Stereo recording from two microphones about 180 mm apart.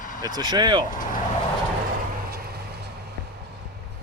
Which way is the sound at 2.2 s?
60° right (ahead or behind).